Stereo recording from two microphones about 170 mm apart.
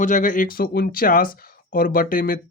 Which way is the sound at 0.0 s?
50° left (ahead or behind).